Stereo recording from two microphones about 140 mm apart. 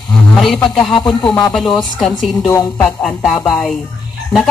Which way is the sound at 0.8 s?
35° left (ahead or behind).